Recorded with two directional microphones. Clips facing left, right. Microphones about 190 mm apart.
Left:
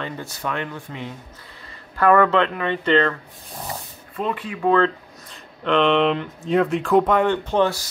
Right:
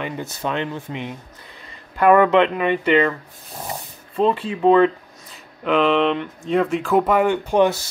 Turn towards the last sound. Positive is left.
turn(degrees=-15)  # may be behind; listen again after turning